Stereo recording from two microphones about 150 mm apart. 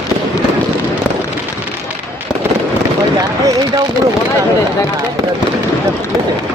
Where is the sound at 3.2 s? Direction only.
20° right (ahead or behind).